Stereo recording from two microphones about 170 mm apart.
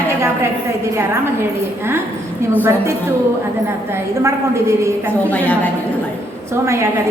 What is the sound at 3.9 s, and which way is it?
A woman's voice, 15° right (ahead or behind).